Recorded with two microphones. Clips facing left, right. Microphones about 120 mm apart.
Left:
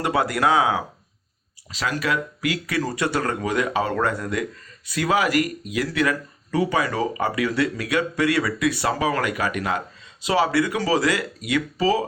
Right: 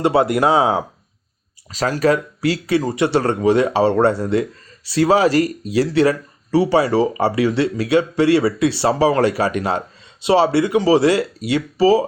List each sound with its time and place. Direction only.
0.0 s speech: 25° right (ahead or behind)
1.7 s speech: 40° right (ahead or behind)